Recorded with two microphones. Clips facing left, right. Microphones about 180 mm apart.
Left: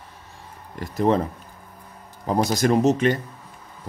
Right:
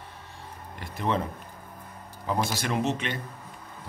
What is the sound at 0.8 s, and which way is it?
Speech, 40° left (ahead or behind).